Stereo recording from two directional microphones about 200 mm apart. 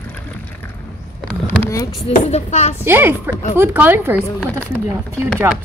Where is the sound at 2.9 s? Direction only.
10° right (ahead or behind).